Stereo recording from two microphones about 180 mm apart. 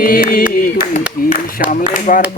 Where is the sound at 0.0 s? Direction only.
50° left (ahead or behind).